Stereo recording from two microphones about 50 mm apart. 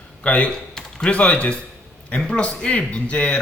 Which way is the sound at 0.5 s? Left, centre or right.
Centre.